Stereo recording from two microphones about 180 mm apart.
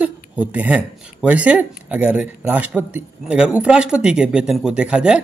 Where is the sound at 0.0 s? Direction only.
5° right (ahead or behind).